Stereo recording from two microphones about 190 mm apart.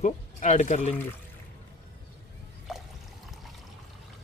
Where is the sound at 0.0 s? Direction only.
40° left (ahead or behind).